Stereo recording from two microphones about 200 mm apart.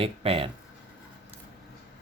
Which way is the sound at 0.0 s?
30° right (ahead or behind).